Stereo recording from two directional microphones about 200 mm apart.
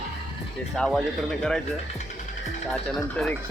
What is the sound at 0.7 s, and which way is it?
Speech, 5° left (ahead or behind).